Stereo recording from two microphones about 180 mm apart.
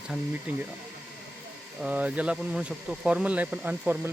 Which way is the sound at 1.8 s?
5° right (ahead or behind).